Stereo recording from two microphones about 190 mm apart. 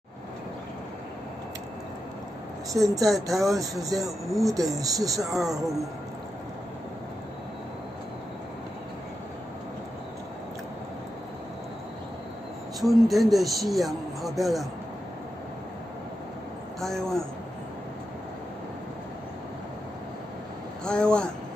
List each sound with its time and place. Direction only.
2.7 s speech: 15° right (ahead or behind)
4.3 s speech: centre (ahead or behind)
4.7 s speech: 20° right (ahead or behind)
5.2 s speech: centre (ahead or behind)
5.5 s speech: 15° right (ahead or behind)
12.8 s speech: centre (ahead or behind)
16.8 s speech: centre (ahead or behind)
20.8 s speech: 5° left (ahead or behind)